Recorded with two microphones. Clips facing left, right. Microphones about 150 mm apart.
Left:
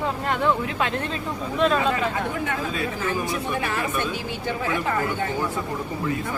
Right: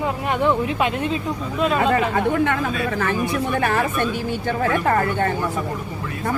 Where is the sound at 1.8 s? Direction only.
60° right (ahead or behind).